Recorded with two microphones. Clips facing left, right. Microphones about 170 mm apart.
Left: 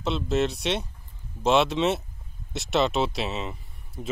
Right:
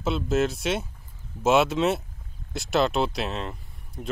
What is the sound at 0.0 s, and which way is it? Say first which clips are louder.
Speech: right 1 dB; centre (ahead or behind).